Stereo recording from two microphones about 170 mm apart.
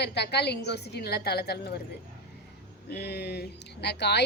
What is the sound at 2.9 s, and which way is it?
Speech, 75° left (ahead or behind).